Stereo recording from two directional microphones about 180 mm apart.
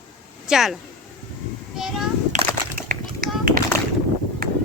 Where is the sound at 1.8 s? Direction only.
Centre (ahead or behind).